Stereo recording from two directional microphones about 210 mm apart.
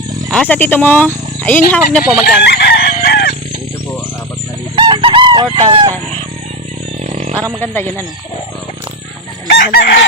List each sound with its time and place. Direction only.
0.3 s speech: 5° left (ahead or behind)
2.2 s chicken: 50° left (ahead or behind)
4.7 s chicken: 20° right (ahead or behind)
7.0 s a sound: 35° right (ahead or behind)
7.6 s speech: 10° left (ahead or behind)
9.6 s chicken: 55° left (ahead or behind)